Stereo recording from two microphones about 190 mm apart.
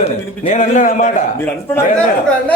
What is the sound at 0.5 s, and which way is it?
Speech, 40° left (ahead or behind).